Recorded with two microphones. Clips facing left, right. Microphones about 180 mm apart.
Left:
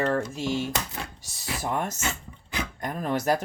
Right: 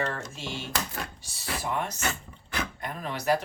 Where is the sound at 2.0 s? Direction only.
20° left (ahead or behind).